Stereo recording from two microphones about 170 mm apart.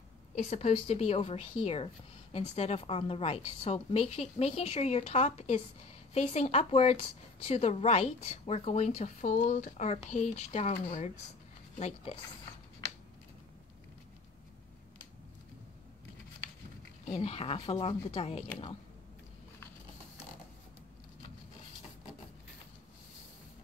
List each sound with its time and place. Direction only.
0.4 s speech: 40° left (ahead or behind)
17.0 s speech: 35° left (ahead or behind)